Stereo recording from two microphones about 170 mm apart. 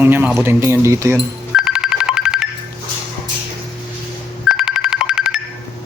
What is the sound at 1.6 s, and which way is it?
Ringtone, 5° right (ahead or behind).